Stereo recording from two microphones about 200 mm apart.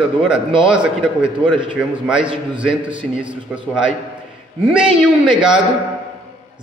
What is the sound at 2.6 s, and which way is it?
Mantra, 5° right (ahead or behind).